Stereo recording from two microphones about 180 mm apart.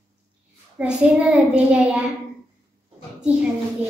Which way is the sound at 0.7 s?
5° right (ahead or behind).